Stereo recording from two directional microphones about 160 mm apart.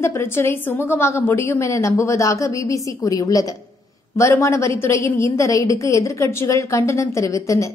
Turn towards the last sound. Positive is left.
turn(degrees=20)  # may be behind; listen again after turning